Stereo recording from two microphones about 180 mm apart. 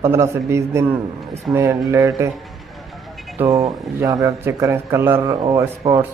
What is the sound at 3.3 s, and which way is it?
Speech, 15° right (ahead or behind).